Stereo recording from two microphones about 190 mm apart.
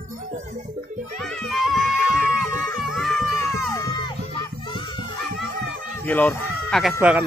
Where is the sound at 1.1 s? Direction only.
Centre (ahead or behind).